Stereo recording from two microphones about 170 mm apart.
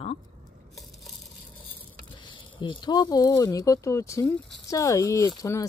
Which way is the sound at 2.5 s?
25° left (ahead or behind).